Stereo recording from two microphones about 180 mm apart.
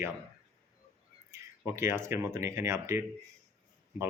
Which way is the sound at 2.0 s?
15° right (ahead or behind).